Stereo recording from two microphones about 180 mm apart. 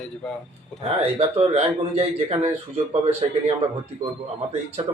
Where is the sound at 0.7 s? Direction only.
35° right (ahead or behind).